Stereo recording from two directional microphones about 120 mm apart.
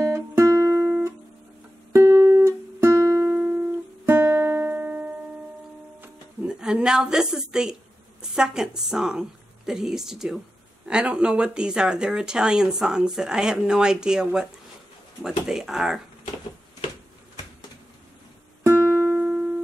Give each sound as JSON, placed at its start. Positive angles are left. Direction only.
{"t": 0.0, "sound": "music", "side_deg": -25}
{"t": 8.2, "sound": "a woman's voice", "side_deg": -5}
{"t": 18.6, "sound": "music", "side_deg": -20}